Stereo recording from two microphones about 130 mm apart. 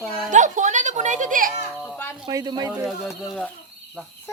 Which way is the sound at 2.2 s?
35° right (ahead or behind).